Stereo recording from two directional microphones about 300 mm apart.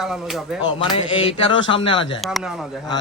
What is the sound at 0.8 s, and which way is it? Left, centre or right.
Speech, centre.